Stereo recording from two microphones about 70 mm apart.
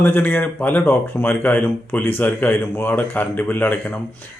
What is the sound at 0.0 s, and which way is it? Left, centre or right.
A man's voice, left.